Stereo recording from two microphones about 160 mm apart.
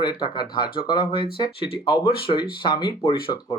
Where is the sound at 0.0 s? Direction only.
30° left (ahead or behind).